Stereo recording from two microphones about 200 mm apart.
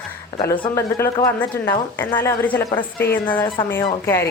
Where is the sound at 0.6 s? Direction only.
15° left (ahead or behind).